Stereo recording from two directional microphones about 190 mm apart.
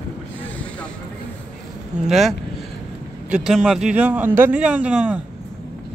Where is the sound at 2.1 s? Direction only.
Centre (ahead or behind).